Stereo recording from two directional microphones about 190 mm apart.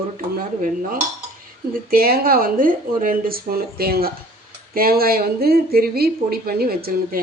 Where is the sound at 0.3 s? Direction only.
45° right (ahead or behind).